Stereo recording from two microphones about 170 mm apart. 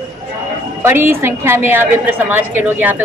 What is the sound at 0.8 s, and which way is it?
A woman's voice, 15° right (ahead or behind).